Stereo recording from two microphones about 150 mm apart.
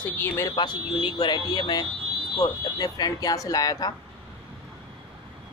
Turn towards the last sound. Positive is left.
turn(degrees=25)  # may be behind; listen again after turning